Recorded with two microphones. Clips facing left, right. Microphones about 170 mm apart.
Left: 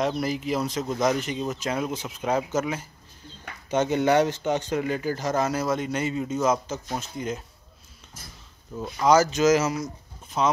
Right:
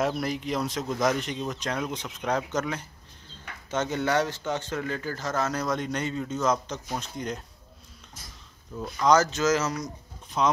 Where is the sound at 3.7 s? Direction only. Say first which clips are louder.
Left 5 dB; 15° left (ahead or behind).